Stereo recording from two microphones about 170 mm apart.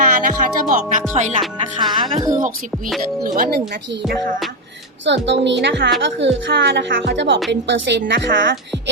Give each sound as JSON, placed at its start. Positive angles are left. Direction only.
{"t": 0.0, "sound": "speech", "side_deg": -50}
{"t": 1.2, "sound": "speech", "side_deg": -35}
{"t": 2.0, "sound": "a woman's voice", "side_deg": -20}
{"t": 3.2, "sound": "speech", "side_deg": -55}
{"t": 4.0, "sound": "music", "side_deg": 0}
{"t": 5.0, "sound": "a woman's voice", "side_deg": -90}